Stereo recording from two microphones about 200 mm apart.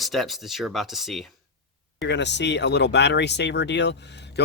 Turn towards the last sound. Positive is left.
turn(degrees=60)  # may be behind; listen again after turning